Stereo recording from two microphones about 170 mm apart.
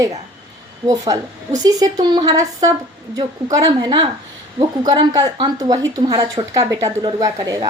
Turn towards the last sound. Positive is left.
turn(degrees=-20)  # may be behind; listen again after turning